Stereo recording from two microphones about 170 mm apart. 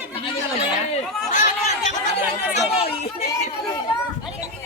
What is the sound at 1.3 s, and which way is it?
Chatter, 50° left (ahead or behind).